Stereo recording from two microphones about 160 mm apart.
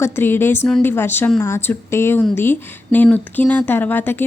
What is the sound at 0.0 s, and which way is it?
A woman's voice, 15° left (ahead or behind).